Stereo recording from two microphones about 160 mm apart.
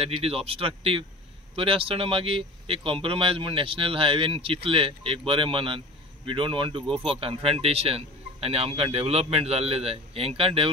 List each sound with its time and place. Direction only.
0.0 s speech: 35° right (ahead or behind)